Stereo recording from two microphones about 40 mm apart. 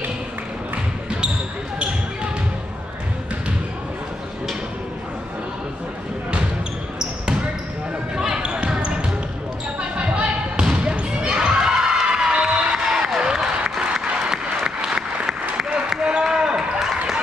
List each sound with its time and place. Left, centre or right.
8.2 s basketball bounce: centre
10.5 s basketball bounce: right
12.8 s music: centre
13.7 s applause: centre
16.0 s basketball bounce: right